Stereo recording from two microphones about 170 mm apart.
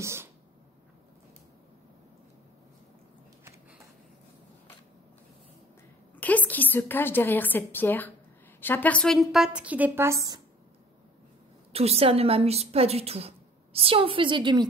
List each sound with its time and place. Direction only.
0.0 s speech: 15° right (ahead or behind)
6.1 s a woman's voice: 10° left (ahead or behind); by 10.4 s 15° right (ahead or behind)
11.7 s a woman's voice: 35° right (ahead or behind)